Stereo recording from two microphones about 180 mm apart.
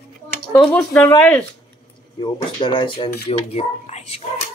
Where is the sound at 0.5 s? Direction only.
5° left (ahead or behind).